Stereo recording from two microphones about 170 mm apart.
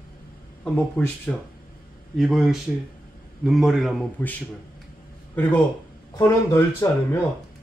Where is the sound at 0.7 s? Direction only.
10° left (ahead or behind).